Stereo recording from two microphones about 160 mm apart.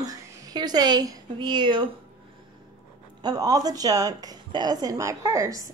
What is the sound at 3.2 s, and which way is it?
A woman's voice, 25° right (ahead or behind).